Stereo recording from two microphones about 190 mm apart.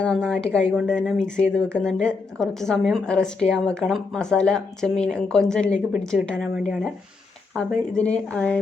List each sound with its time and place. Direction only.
0.0 s a woman's voice: 5° left (ahead or behind)
7.5 s a woman's voice: 5° left (ahead or behind)